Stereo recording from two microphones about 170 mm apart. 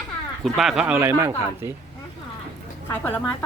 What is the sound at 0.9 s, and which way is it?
Speech, 15° right (ahead or behind).